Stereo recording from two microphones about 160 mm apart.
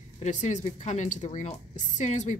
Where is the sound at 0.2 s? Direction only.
45° left (ahead or behind).